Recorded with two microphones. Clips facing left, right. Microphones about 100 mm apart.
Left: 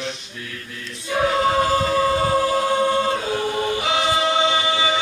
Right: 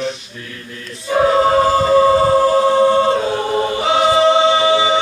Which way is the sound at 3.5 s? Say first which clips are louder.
Right 6 dB; 35° right (ahead or behind).